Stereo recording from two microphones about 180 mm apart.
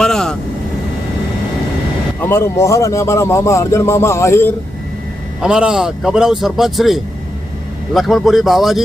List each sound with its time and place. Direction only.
0.0 s vehicle: 5° left (ahead or behind)
2.2 s speech: 15° left (ahead or behind)
5.4 s speech: 5° right (ahead or behind)